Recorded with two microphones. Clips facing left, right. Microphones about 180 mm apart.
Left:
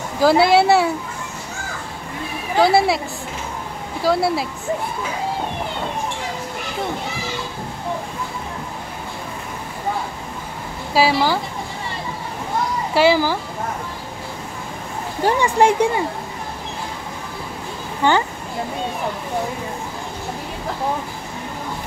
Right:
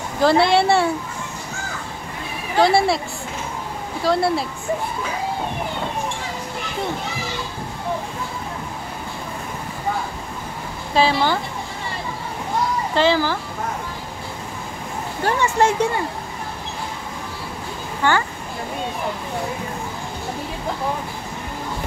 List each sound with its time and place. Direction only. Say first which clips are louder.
0.2 s speech: left 2 dB; 5° left (ahead or behind)
2.6 s speech: left 1 dB; centre (ahead or behind)
4.0 s speech: left 1 dB; centre (ahead or behind)
10.9 s speech: left 1 dB; 5° left (ahead or behind)
12.9 s speech: left 3 dB; 10° left (ahead or behind)
15.2 s speech: left 3 dB; 15° left (ahead or behind)
18.0 s speech: left 2 dB; 15° left (ahead or behind)